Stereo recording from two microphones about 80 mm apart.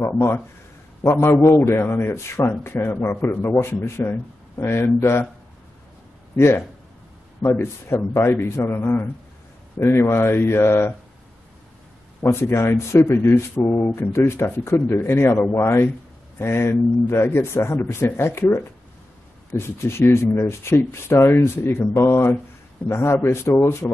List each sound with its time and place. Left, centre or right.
0.0 s speech: left
6.3 s speech: left
12.3 s speech: left
19.6 s speech: left